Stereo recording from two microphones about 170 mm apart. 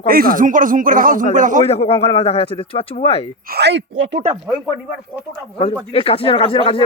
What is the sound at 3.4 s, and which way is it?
Speech, 75° right (ahead or behind).